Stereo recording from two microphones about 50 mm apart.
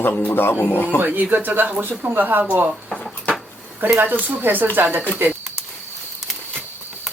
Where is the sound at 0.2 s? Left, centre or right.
Left.